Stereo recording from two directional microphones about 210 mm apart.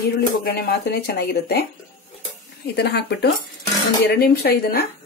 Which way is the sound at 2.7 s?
50° left (ahead or behind).